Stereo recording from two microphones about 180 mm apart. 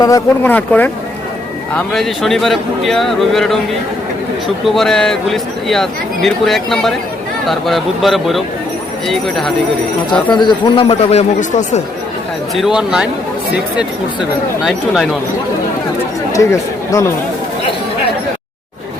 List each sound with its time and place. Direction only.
0.0 s speech: 15° left (ahead or behind)
10.3 s speech: 25° left (ahead or behind); by 11.8 s 40° left (ahead or behind)
12.5 s speech: 5° right (ahead or behind)
14.6 s speech: centre (ahead or behind)
16.3 s speech: 20° left (ahead or behind)